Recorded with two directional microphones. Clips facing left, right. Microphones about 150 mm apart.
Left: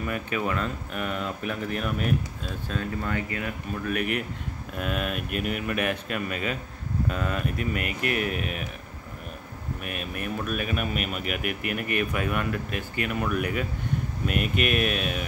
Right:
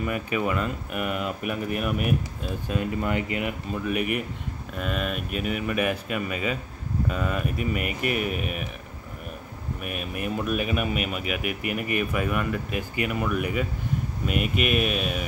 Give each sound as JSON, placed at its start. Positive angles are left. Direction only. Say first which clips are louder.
{"t": 0.0, "sound": "speech", "louder": "right 2 dB", "side_deg": -5}
{"t": 4.7, "sound": "speech", "louder": "even", "side_deg": 0}
{"t": 9.8, "sound": "speech", "louder": "right 3 dB", "side_deg": -5}